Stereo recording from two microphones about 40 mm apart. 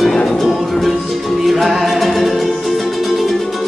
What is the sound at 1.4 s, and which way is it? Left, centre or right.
Music, centre.